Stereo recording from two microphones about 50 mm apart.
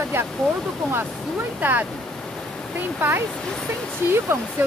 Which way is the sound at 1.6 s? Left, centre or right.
Right.